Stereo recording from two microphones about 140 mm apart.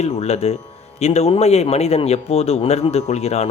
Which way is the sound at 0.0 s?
50° left (ahead or behind).